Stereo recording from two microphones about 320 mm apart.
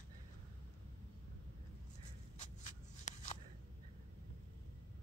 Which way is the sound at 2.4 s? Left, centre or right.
Left.